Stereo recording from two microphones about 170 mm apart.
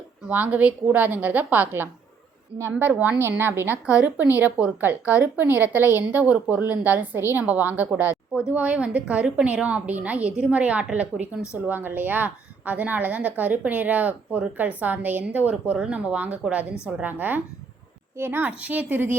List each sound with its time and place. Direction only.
0.3 s a woman's voice: 10° right (ahead or behind)